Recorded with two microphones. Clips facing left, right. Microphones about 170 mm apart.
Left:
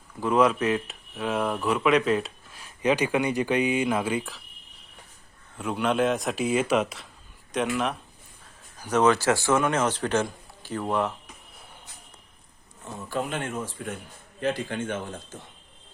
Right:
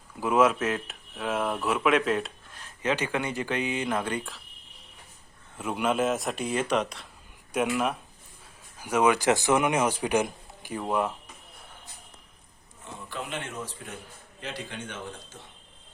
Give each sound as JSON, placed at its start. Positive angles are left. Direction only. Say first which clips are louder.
{"t": 0.2, "sound": "speech", "louder": "left 1 dB", "side_deg": -5}
{"t": 5.5, "sound": "speech", "louder": "left 2 dB", "side_deg": -5}
{"t": 7.5, "sound": "a man's voice", "louder": "even", "side_deg": -10}
{"t": 13.1, "sound": "speech", "louder": "left 6 dB", "side_deg": 45}